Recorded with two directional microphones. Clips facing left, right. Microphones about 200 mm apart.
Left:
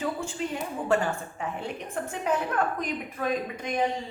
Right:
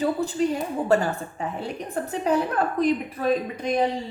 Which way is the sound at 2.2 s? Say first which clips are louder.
Right 4 dB; 35° right (ahead or behind).